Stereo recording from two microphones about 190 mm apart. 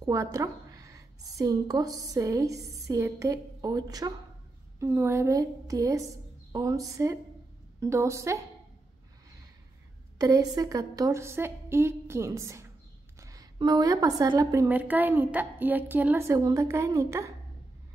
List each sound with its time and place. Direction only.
0.0 s a woman's voice: 15° right (ahead or behind)
10.1 s a woman's voice: 20° right (ahead or behind)